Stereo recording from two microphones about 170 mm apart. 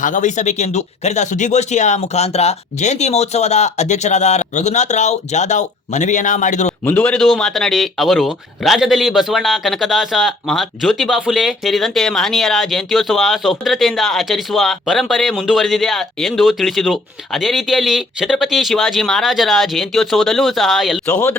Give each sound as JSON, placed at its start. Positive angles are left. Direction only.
{"t": 0.0, "sound": "speech", "side_deg": 45}
{"t": 6.8, "sound": "a man's voice", "side_deg": 5}